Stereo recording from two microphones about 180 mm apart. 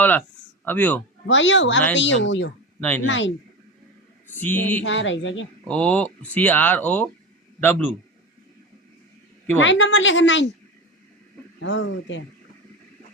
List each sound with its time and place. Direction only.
0.6 s speech: 10° left (ahead or behind)
1.3 s a woman's voice: 90° left
4.4 s speech: 10° left (ahead or behind)
4.8 s a woman's voice: 90° left
5.6 s speech: 5° left (ahead or behind)
9.6 s a woman's voice: 90° left
11.6 s a woman's voice: 90° left